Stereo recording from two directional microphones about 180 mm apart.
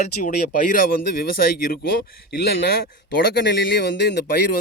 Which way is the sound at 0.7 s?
55° left (ahead or behind).